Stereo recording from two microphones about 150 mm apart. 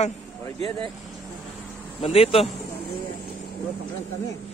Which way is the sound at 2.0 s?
40° left (ahead or behind).